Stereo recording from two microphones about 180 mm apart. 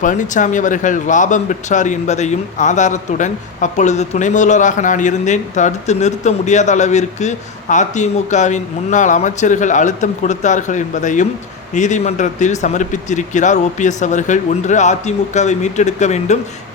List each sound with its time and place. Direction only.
0.0 s speech: 45° left (ahead or behind)